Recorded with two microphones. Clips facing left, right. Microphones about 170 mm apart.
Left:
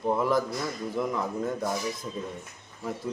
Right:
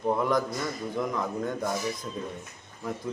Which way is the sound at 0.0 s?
5° left (ahead or behind).